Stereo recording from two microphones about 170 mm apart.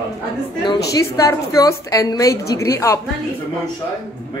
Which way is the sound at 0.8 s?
20° left (ahead or behind).